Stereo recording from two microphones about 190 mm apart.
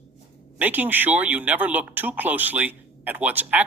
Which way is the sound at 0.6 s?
10° right (ahead or behind).